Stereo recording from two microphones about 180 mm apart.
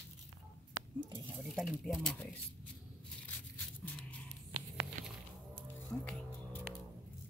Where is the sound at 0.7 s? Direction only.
20° right (ahead or behind).